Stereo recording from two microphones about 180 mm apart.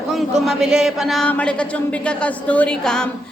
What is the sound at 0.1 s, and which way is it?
Speech, centre (ahead or behind).